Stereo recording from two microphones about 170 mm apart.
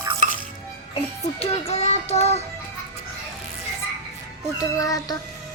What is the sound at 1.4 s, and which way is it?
Speech, 40° left (ahead or behind).